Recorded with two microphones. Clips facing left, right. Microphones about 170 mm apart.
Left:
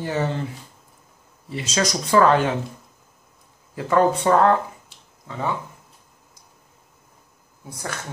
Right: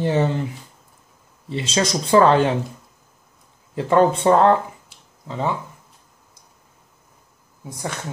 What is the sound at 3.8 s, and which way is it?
Speech, 25° right (ahead or behind).